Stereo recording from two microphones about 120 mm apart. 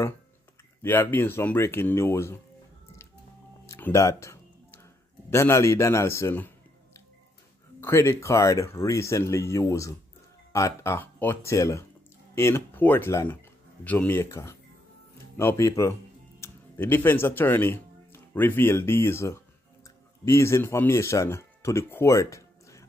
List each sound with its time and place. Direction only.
0.8 s speech: 15° left (ahead or behind)
3.6 s music: 25° left (ahead or behind)
5.3 s speech: 25° left (ahead or behind)
7.8 s speech: 20° left (ahead or behind)